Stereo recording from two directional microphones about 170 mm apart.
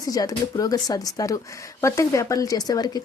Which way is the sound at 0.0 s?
20° left (ahead or behind).